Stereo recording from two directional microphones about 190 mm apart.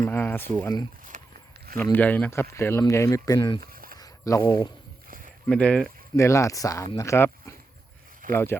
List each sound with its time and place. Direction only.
0.0 s speech: 10° left (ahead or behind)
1.1 s horse: 40° right (ahead or behind)
1.8 s speech: 10° left (ahead or behind)
3.6 s a sound: 50° right (ahead or behind)
3.9 s a sound: 20° left (ahead or behind)
5.5 s speech: 5° left (ahead or behind)
6.1 s speech: 15° left (ahead or behind)
8.2 s speech: 45° right (ahead or behind)